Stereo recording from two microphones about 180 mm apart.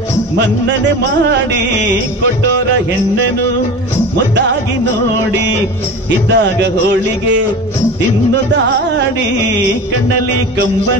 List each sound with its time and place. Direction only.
6.3 s a man's voice: 75° right (ahead or behind)